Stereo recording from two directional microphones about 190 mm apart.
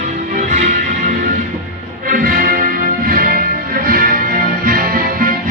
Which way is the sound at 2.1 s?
50° right (ahead or behind).